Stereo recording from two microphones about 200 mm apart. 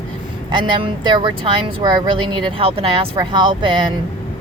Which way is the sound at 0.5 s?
25° right (ahead or behind).